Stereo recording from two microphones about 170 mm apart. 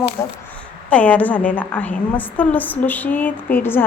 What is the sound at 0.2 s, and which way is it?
A woman's voice, 15° left (ahead or behind).